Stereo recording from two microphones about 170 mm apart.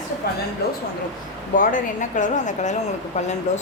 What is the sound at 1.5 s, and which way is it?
A woman's voice, 50° left (ahead or behind).